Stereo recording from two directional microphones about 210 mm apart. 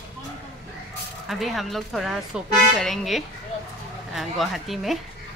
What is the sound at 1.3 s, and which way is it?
Speech, centre (ahead or behind).